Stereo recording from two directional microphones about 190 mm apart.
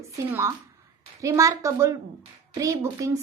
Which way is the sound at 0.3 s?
15° right (ahead or behind).